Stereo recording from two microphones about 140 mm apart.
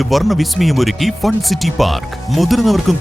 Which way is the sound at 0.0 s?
Centre (ahead or behind).